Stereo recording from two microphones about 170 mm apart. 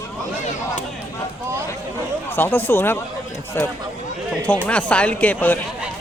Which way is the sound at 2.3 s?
10° left (ahead or behind).